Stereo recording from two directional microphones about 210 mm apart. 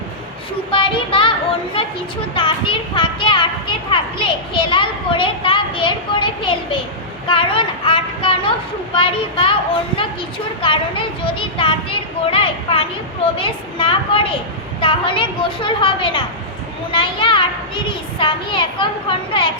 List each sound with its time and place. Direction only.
0.7 s a child's voice: 25° left (ahead or behind)
2.3 s a child's voice: 25° left (ahead or behind)
7.3 s a sound: 25° left (ahead or behind)
9.0 s a child's voice: 25° left (ahead or behind)
10.6 s a child's voice: 25° left (ahead or behind)